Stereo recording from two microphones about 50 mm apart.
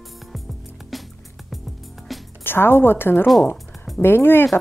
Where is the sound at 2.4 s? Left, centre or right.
Left.